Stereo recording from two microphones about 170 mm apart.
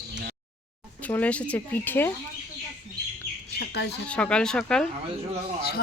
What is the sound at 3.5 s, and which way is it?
Bird, 85° left.